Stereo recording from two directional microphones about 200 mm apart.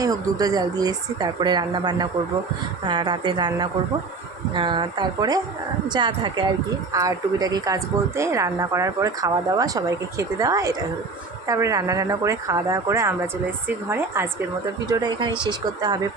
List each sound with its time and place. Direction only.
0.0 s a woman's voice: 20° right (ahead or behind)